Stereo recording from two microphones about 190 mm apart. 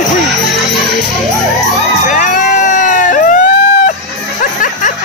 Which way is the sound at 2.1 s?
40° left (ahead or behind).